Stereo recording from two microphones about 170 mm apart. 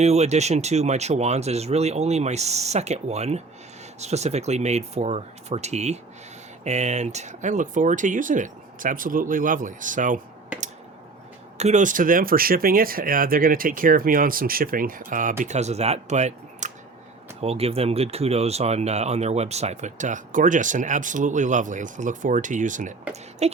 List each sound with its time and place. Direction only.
0.0 s speech: 40° right (ahead or behind)
11.5 s speech: 40° right (ahead or behind)